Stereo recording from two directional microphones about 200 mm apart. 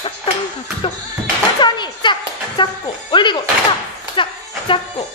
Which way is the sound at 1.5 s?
20° left (ahead or behind).